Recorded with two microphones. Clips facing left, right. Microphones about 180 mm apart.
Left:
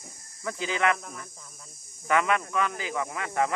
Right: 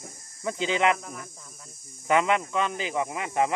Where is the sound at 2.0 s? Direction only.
20° right (ahead or behind).